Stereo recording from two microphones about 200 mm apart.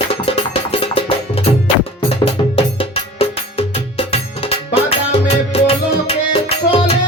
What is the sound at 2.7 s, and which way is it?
Music, 30° left (ahead or behind).